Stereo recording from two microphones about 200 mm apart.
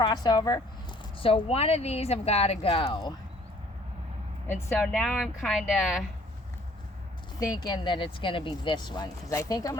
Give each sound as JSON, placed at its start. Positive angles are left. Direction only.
{"t": 0.0, "sound": "speech", "side_deg": 20}
{"t": 4.4, "sound": "speech", "side_deg": 10}
{"t": 7.3, "sound": "speech", "side_deg": 20}